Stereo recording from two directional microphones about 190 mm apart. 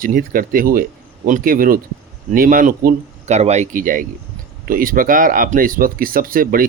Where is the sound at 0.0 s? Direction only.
45° right (ahead or behind).